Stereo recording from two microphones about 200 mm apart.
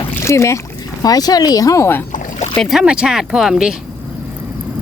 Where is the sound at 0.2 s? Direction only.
15° left (ahead or behind).